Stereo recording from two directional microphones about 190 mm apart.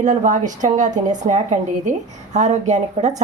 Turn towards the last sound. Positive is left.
turn(degrees=-35)  # may be behind; listen again after turning